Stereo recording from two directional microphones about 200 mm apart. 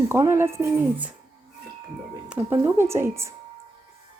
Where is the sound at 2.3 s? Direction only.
10° right (ahead or behind).